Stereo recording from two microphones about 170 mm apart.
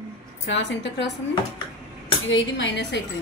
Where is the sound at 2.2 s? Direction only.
90° left.